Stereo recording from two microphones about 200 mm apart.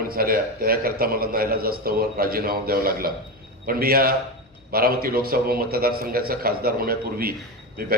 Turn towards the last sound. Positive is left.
turn(degrees=-50)  # may be behind; listen again after turning